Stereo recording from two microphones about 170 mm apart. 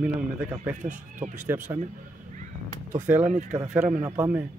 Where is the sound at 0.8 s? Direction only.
50° right (ahead or behind).